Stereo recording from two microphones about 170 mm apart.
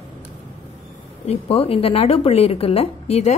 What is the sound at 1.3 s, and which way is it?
A woman's voice, 35° left (ahead or behind).